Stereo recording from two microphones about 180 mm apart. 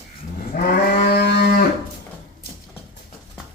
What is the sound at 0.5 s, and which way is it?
Moo, 50° left (ahead or behind).